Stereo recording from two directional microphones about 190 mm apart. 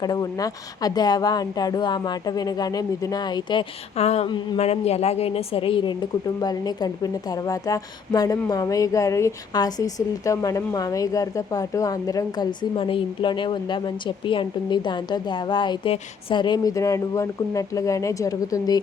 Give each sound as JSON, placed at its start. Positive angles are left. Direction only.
{"t": 0.0, "sound": "a woman's voice", "side_deg": 20}